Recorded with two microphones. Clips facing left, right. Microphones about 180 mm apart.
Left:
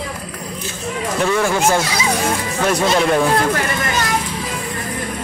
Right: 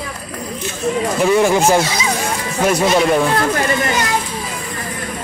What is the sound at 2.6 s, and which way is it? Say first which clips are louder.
Speech: right 2 dB; 5° right (ahead or behind).